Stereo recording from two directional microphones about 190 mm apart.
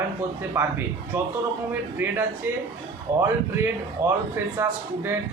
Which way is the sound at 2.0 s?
10° right (ahead or behind).